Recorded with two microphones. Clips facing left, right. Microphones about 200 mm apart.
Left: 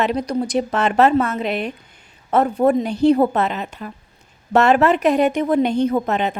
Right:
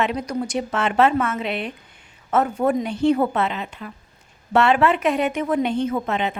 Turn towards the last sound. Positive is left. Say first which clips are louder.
# left 4 dB
turn(degrees=40)  # may be behind; listen again after turning